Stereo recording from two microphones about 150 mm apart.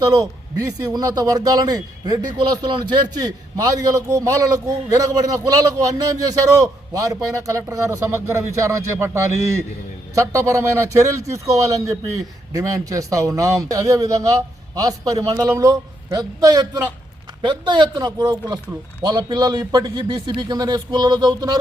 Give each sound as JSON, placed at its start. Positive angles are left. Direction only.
{"t": 0.0, "sound": "a man's voice", "side_deg": -20}